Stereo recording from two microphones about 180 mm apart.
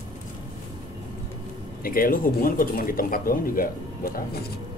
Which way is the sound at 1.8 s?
55° left (ahead or behind).